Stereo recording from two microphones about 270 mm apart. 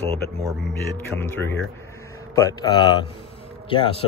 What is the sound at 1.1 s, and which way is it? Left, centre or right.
A man's voice, centre.